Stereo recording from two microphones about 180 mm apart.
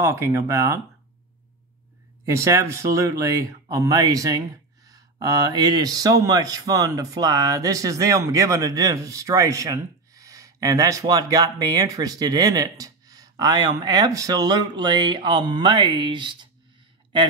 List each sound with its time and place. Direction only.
0.0 s speech: 15° right (ahead or behind)
2.2 s speech: 15° right (ahead or behind)